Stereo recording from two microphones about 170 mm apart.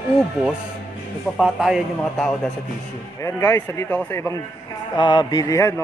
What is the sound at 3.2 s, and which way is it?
A man's voice, 15° left (ahead or behind).